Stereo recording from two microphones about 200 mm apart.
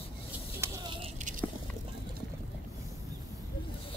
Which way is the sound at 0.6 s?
15° right (ahead or behind).